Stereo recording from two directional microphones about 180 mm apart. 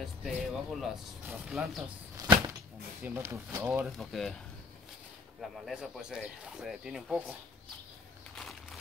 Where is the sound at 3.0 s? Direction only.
10° right (ahead or behind).